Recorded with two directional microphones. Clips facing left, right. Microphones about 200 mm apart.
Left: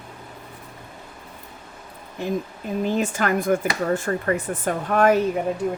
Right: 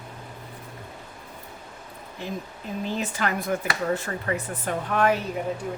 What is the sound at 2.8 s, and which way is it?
Speech, 50° left (ahead or behind).